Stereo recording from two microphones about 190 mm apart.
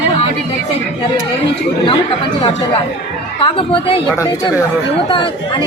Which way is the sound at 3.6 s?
30° left (ahead or behind).